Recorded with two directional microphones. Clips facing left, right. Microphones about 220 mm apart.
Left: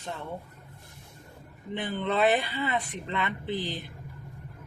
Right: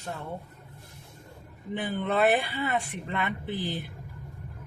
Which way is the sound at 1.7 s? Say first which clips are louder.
Right 1 dB; 10° right (ahead or behind).